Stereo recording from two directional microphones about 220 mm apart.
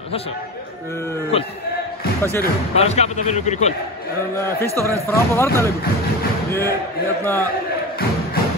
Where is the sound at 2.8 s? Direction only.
30° left (ahead or behind).